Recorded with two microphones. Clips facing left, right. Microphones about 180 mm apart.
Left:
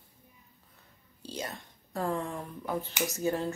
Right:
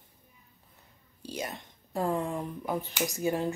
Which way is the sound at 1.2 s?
15° right (ahead or behind).